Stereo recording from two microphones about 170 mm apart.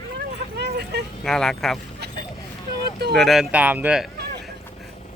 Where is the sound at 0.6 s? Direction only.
80° right.